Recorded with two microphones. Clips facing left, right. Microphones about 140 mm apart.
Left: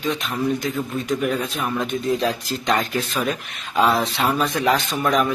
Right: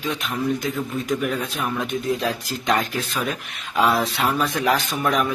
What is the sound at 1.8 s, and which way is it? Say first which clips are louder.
A man's voice: left 3 dB; 10° right (ahead or behind).